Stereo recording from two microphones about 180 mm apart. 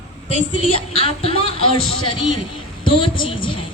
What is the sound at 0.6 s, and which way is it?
A man's voice, 35° left (ahead or behind).